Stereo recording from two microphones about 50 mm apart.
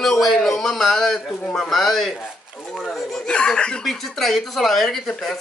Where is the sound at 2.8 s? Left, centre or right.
Centre.